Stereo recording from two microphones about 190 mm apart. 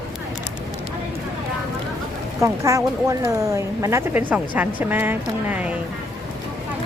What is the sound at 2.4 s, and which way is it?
A woman's voice, 15° right (ahead or behind).